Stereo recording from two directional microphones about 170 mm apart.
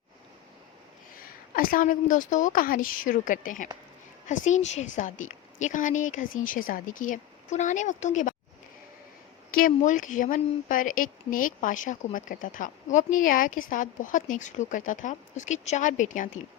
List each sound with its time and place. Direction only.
1.1 s speech: 55° left (ahead or behind)
9.5 s speech: 55° left (ahead or behind)